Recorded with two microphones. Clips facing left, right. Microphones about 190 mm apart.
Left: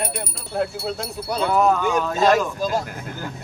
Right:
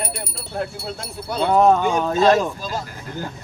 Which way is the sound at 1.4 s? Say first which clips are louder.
Right 4 dB; 30° right (ahead or behind).